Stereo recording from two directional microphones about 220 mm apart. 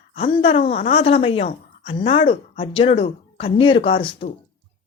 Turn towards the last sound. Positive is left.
turn(degrees=25)  # may be behind; listen again after turning